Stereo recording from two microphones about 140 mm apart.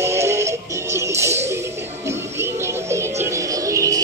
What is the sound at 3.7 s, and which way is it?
Music, 25° right (ahead or behind).